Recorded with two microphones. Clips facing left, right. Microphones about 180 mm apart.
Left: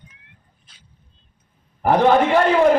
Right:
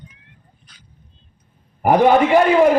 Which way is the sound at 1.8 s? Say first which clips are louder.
Right 2 dB; 10° right (ahead or behind).